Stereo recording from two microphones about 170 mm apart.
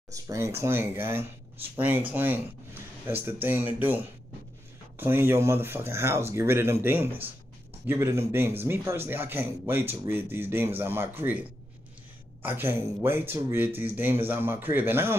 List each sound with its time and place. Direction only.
0.1 s speech: 15° right (ahead or behind)